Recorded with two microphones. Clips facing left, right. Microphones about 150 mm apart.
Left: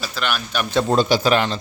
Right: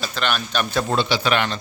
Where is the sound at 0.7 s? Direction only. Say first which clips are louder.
Left 6 dB; 25° left (ahead or behind).